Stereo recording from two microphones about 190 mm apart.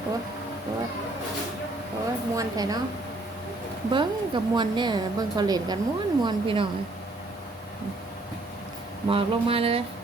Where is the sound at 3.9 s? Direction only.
25° right (ahead or behind).